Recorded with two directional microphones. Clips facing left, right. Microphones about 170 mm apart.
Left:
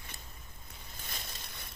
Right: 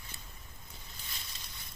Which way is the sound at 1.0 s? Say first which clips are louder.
Left 6 dB; 50° left (ahead or behind).